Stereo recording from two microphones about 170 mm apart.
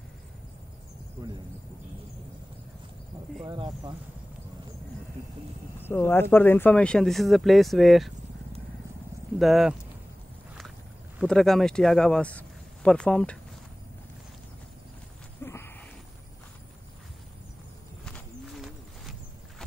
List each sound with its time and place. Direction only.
3.4 s speech: 25° right (ahead or behind)
5.8 s speech: 15° left (ahead or behind)
9.4 s speech: centre (ahead or behind)
11.2 s speech: centre (ahead or behind)
15.4 s a sound: 15° left (ahead or behind)
18.1 s horse: centre (ahead or behind)